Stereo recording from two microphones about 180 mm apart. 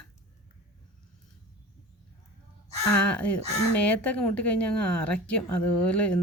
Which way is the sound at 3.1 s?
5° left (ahead or behind).